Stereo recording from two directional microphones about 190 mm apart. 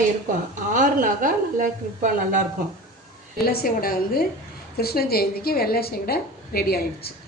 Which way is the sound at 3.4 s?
50° left (ahead or behind).